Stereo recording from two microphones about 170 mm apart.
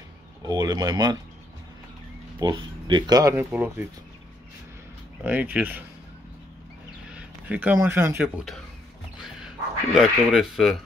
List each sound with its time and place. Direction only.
0.5 s speech: 20° right (ahead or behind)
2.3 s speech: 25° right (ahead or behind)
5.2 s speech: 10° right (ahead or behind)
7.2 s speech: 10° right (ahead or behind)
9.9 s speech: centre (ahead or behind)